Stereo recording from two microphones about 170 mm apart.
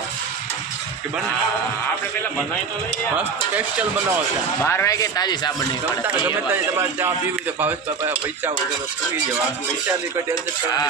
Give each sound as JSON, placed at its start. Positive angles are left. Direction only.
{"t": 3.2, "sound": "speech", "side_deg": -10}
{"t": 4.6, "sound": "speech", "side_deg": 15}
{"t": 6.2, "sound": "speech", "side_deg": -15}